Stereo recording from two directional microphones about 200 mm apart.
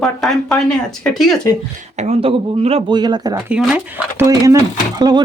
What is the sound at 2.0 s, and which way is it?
Speech, 30° right (ahead or behind).